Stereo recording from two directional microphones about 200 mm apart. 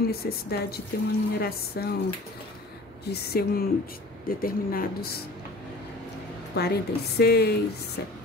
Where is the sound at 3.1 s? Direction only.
50° left (ahead or behind).